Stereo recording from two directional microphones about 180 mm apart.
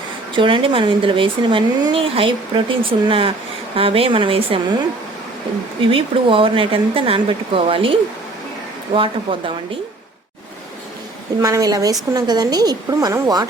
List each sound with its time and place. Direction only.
0.3 s speech: 30° right (ahead or behind)
5.8 s speech: 30° right (ahead or behind)
11.3 s speech: 20° right (ahead or behind)